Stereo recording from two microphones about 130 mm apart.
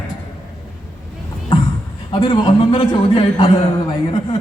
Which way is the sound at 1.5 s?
45° left (ahead or behind).